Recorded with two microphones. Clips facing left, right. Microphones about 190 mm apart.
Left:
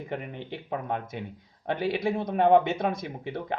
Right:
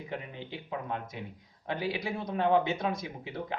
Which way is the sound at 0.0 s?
55° left (ahead or behind).